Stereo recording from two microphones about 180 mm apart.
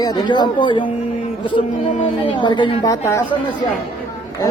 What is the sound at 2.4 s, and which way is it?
Speech, 25° left (ahead or behind).